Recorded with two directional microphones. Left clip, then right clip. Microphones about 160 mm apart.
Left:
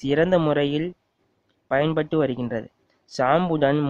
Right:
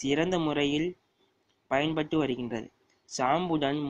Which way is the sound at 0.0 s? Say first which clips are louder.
Left 8 dB; 40° left (ahead or behind).